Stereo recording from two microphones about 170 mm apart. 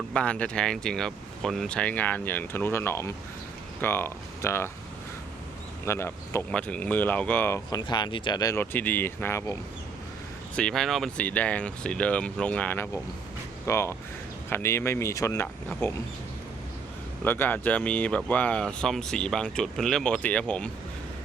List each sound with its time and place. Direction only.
0.1 s speech: 5° left (ahead or behind)
5.8 s speech: 15° left (ahead or behind)
10.5 s speech: 5° left (ahead or behind)
17.2 s speech: 10° left (ahead or behind)